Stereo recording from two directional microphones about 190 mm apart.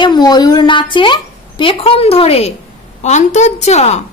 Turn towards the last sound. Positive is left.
turn(degrees=35)  # may be behind; listen again after turning